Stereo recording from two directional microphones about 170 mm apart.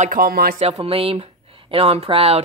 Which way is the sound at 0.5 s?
40° right (ahead or behind).